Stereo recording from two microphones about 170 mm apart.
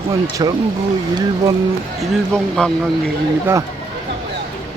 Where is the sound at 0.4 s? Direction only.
25° right (ahead or behind).